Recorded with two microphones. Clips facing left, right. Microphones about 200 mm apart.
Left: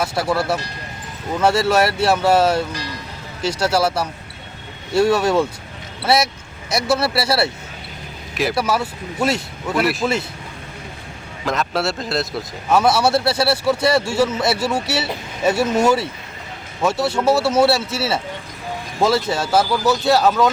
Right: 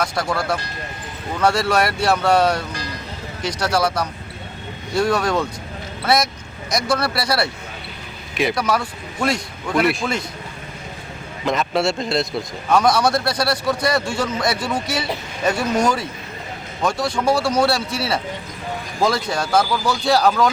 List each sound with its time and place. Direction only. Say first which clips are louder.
0.0 s a man's voice: left 2 dB; 5° left (ahead or behind)
1.4 s speech: left 2 dB; 25° left (ahead or behind)
2.0 s a man's voice: even; 5° left (ahead or behind)
3.7 s speech: even; 5° left (ahead or behind)
5.0 s a man's voice: left 3 dB; 5° left (ahead or behind)
11.4 s a man's voice: right 2 dB; centre (ahead or behind)